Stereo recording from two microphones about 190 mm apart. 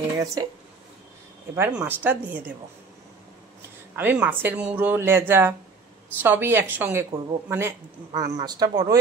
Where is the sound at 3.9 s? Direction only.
10° right (ahead or behind).